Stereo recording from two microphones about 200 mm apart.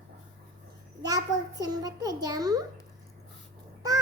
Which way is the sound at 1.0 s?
20° right (ahead or behind).